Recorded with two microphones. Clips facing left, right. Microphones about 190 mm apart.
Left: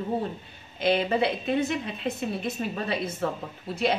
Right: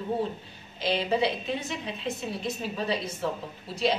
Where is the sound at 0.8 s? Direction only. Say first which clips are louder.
Left 2 dB; 55° left (ahead or behind).